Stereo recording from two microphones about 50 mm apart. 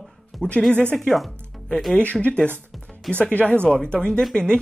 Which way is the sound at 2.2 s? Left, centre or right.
Left.